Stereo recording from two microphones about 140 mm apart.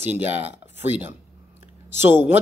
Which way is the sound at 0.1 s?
15° right (ahead or behind).